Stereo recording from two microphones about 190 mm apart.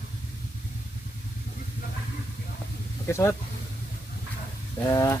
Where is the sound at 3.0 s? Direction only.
15° left (ahead or behind).